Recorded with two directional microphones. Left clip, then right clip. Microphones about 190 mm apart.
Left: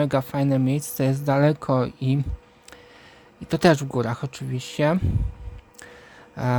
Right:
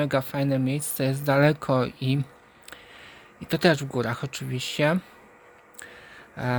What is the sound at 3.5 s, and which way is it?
Speech, 15° left (ahead or behind).